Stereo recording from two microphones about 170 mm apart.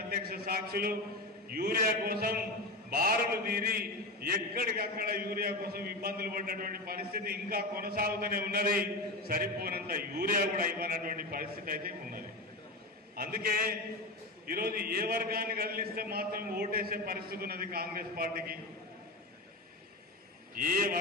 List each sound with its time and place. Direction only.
0.1 s a man's voice: 60° right (ahead or behind)
20.5 s a man's voice: 55° right (ahead or behind)